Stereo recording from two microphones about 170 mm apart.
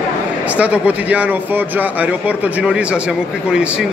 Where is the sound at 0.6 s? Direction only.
10° right (ahead or behind).